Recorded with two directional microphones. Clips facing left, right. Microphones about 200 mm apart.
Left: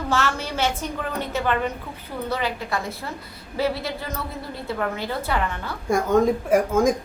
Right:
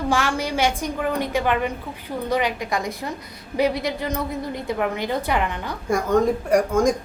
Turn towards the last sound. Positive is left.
turn(degrees=0)  # may be behind; listen again after turning